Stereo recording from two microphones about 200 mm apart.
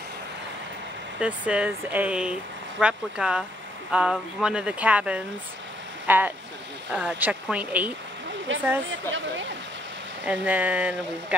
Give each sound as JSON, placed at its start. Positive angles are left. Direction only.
{"t": 1.2, "sound": "speech", "side_deg": -5}
{"t": 8.5, "sound": "speech", "side_deg": -70}
{"t": 10.2, "sound": "speech", "side_deg": -10}